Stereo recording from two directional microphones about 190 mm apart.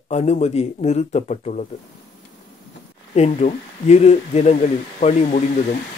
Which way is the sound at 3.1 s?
35° left (ahead or behind).